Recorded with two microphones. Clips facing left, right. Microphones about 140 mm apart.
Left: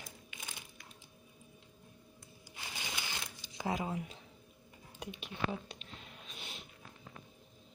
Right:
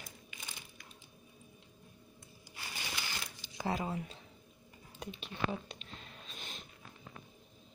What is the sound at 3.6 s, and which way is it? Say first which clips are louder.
Speech: even; 10° left (ahead or behind).